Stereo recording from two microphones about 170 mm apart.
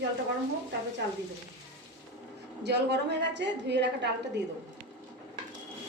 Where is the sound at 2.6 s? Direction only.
90° right.